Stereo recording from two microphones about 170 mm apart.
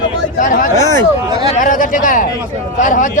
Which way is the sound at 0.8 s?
45° right (ahead or behind).